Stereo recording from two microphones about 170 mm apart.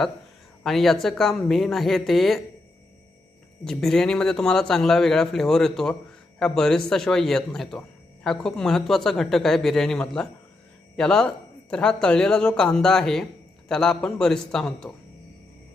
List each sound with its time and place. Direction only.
0.6 s a man's voice: centre (ahead or behind)
3.6 s a man's voice: 5° left (ahead or behind)